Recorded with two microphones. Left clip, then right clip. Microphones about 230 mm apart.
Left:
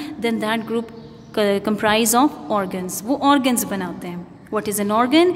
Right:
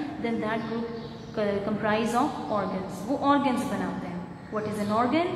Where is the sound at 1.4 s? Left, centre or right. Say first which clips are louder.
Left 9 dB; left.